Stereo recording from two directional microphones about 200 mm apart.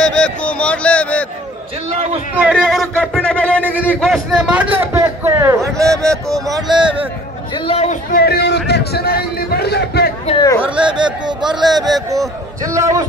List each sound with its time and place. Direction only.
0.0 s a sound: 5° left (ahead or behind)
2.3 s a man's voice: 5° right (ahead or behind); by 7.1 s 25° right (ahead or behind)
7.5 s speech: 30° left (ahead or behind)
8.1 s a man's voice: 50° left (ahead or behind)
10.2 s speech: 25° left (ahead or behind)
10.6 s a man's voice: 25° right (ahead or behind)